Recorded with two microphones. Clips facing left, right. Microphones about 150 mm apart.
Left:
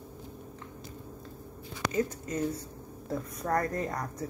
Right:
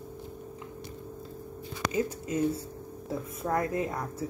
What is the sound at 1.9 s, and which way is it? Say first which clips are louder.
Speech: even; 10° right (ahead or behind).